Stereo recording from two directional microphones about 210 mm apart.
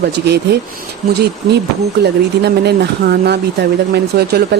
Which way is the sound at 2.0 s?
50° right (ahead or behind).